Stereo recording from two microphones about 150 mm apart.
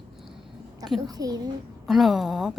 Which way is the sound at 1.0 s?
25° right (ahead or behind).